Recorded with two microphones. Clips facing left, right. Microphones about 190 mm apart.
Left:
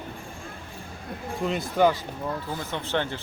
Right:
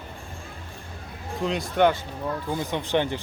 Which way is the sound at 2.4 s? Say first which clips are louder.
Right 4 dB; 15° right (ahead or behind).